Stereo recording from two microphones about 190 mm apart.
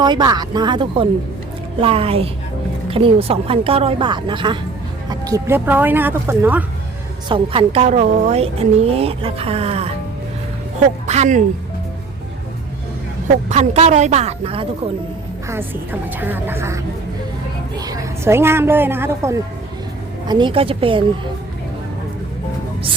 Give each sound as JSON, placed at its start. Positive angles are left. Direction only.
{"t": 0.0, "sound": "a woman's voice", "side_deg": -20}
{"t": 7.3, "sound": "a woman's voice", "side_deg": -25}
{"t": 11.0, "sound": "a woman's voice", "side_deg": -35}
{"t": 13.5, "sound": "a woman's voice", "side_deg": -35}
{"t": 15.4, "sound": "a woman's voice", "side_deg": -10}